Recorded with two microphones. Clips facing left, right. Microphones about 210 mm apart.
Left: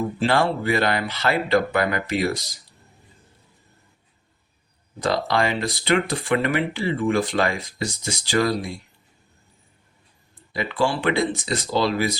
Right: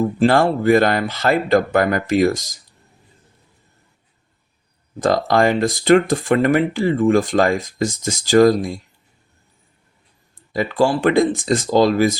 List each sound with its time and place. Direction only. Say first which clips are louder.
0.2 s speech: right 6 dB; 45° right (ahead or behind)
4.9 s speech: right 6 dB; 45° right (ahead or behind)
10.5 s speech: right 6 dB; 40° right (ahead or behind)